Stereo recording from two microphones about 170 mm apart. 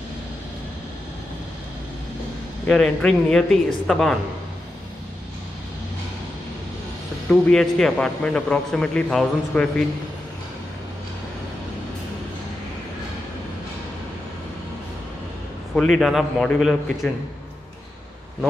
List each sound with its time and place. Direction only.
2.6 s a man's voice: 5° left (ahead or behind)
7.2 s a man's voice: 5° left (ahead or behind)
15.7 s a man's voice: 5° left (ahead or behind)